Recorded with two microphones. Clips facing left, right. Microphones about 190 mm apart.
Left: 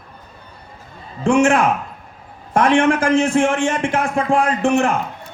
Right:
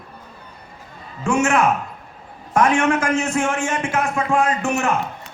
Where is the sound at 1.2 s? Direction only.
30° left (ahead or behind).